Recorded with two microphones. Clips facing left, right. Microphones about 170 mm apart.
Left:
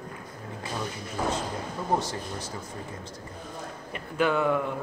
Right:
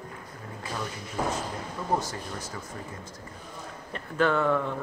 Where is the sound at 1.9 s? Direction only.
30° left (ahead or behind).